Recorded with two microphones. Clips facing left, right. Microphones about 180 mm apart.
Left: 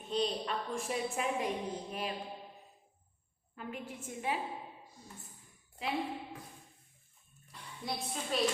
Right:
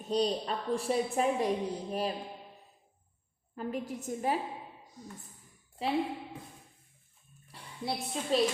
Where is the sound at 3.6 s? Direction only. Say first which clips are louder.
Right 7 dB; 40° right (ahead or behind).